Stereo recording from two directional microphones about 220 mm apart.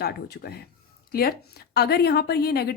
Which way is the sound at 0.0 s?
45° left (ahead or behind).